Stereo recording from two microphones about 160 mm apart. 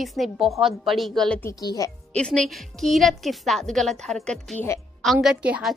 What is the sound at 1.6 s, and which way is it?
Speech, 25° left (ahead or behind).